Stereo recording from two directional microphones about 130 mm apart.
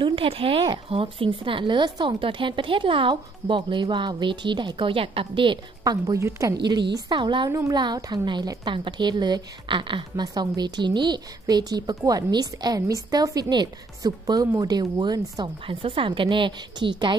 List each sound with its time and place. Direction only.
0.0 s a woman's voice: 45° right (ahead or behind)